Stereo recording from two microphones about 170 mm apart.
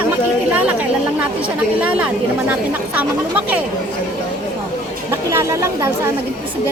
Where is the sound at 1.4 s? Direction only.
10° right (ahead or behind).